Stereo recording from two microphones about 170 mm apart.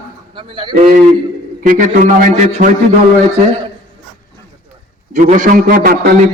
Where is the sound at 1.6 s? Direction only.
50° right (ahead or behind).